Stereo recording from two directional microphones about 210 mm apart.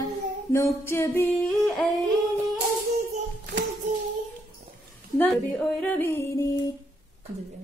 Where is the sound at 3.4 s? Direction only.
40° right (ahead or behind).